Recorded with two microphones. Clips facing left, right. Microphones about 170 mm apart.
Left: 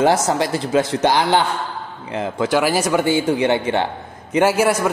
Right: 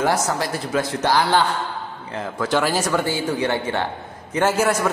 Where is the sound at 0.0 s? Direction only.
20° left (ahead or behind).